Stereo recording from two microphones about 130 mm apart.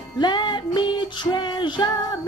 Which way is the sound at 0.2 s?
35° left (ahead or behind).